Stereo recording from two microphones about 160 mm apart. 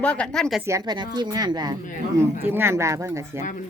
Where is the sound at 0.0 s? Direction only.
5° left (ahead or behind).